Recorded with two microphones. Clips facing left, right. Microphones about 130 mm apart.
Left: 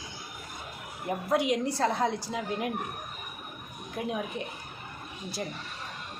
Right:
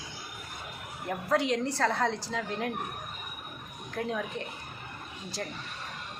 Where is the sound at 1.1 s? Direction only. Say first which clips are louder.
Left 1 dB; 15° left (ahead or behind).